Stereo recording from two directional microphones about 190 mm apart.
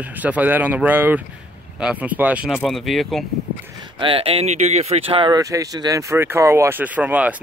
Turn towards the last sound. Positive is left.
turn(degrees=-10)  # may be behind; listen again after turning